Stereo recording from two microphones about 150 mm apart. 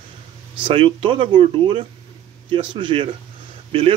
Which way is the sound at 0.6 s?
35° right (ahead or behind).